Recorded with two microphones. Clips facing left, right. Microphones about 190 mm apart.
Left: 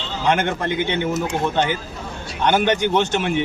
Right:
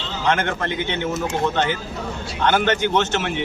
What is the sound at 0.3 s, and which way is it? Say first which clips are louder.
Speech: left 2 dB; 15° left (ahead or behind).